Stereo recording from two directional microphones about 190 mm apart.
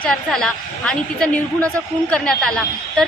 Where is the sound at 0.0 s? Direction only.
5° left (ahead or behind).